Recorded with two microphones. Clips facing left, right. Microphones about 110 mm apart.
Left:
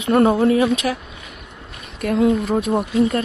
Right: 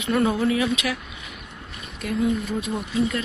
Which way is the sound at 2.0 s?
80° left.